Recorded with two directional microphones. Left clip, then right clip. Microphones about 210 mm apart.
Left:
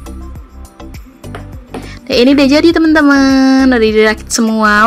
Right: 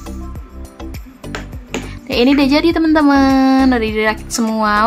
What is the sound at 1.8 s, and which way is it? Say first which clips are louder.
Speech: left 5 dB; 15° left (ahead or behind).